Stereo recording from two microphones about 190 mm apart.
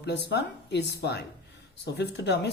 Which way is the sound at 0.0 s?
65° left (ahead or behind).